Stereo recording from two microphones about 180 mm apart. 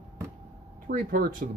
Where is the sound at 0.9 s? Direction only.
55° right (ahead or behind).